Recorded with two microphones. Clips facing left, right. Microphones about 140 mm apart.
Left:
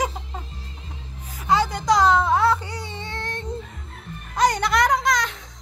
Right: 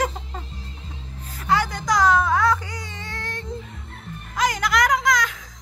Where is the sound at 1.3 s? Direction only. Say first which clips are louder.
Left 1 dB; 20° left (ahead or behind).